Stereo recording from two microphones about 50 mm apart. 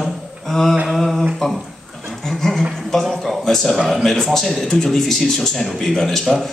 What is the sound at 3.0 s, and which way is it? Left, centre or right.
A man's voice, centre.